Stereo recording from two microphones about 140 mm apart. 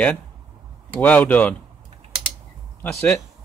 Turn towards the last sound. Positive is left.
turn(degrees=15)  # may be behind; listen again after turning